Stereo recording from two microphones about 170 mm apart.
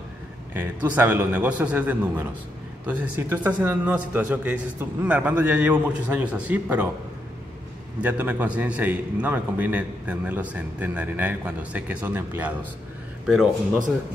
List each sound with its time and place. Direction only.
0.6 s a man's voice: 10° right (ahead or behind)
8.0 s a man's voice: 10° right (ahead or behind)